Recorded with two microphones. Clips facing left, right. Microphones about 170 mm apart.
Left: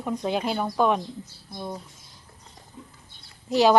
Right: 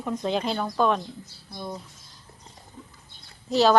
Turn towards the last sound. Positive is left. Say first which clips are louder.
# left 1 dB
turn(degrees=15)  # may be behind; listen again after turning